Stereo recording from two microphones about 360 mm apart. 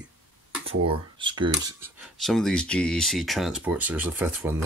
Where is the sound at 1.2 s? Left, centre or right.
Centre.